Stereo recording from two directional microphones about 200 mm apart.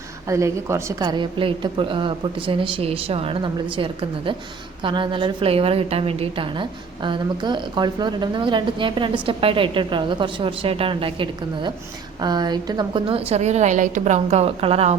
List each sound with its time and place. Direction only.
0.3 s a woman's voice: 15° right (ahead or behind)